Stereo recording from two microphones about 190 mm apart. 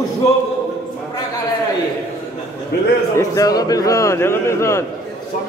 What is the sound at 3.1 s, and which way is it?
A man's voice, 20° left (ahead or behind).